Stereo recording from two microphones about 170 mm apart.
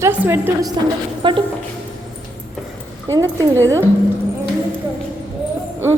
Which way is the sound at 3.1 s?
20° right (ahead or behind).